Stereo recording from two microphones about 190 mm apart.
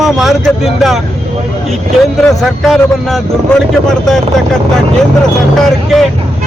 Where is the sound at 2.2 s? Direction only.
Centre (ahead or behind).